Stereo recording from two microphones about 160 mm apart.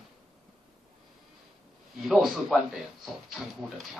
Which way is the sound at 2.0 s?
Centre (ahead or behind).